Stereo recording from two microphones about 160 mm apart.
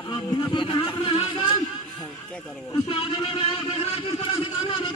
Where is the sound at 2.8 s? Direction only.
35° left (ahead or behind).